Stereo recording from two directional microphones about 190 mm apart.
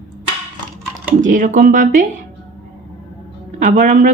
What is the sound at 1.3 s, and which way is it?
Speech, 45° right (ahead or behind).